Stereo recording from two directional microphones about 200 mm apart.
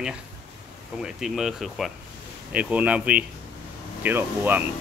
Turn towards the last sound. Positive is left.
turn(degrees=-10)  # may be behind; listen again after turning